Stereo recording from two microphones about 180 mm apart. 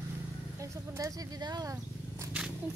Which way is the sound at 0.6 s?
15° right (ahead or behind).